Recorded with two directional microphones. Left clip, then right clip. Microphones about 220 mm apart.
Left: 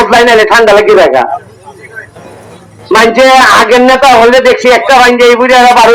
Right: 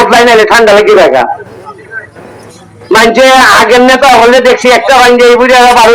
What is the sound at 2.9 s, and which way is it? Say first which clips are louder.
A man's voice: even; 30° right (ahead or behind).